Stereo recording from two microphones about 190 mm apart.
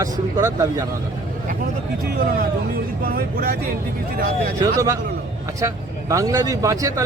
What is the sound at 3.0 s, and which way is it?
Speech, 55° right (ahead or behind).